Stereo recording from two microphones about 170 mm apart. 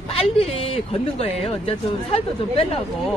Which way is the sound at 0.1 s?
35° left (ahead or behind).